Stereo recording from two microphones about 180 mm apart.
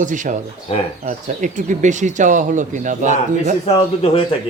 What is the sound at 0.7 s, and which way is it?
Speech, 30° left (ahead or behind).